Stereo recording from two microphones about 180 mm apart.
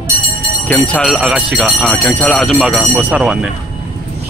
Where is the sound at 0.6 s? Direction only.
5° left (ahead or behind).